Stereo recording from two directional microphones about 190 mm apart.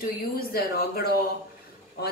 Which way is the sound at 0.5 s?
55° left (ahead or behind).